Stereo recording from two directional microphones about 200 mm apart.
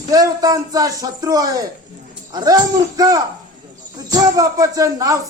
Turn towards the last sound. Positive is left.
turn(degrees=-20)  # may be behind; listen again after turning